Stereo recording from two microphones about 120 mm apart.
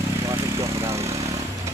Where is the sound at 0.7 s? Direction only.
25° right (ahead or behind).